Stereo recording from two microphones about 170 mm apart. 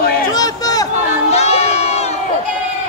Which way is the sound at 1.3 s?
40° left (ahead or behind).